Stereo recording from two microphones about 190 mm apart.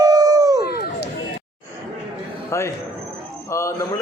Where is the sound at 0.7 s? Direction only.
55° left (ahead or behind).